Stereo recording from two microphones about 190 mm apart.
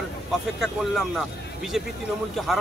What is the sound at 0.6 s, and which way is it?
Speech, centre (ahead or behind).